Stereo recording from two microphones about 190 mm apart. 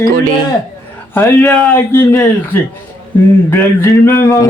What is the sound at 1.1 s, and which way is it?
Speech, 10° left (ahead or behind).